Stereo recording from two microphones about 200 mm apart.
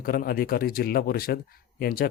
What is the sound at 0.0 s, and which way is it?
Speech, 45° left (ahead or behind).